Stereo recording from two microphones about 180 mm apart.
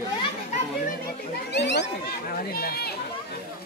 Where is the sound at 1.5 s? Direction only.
70° left (ahead or behind).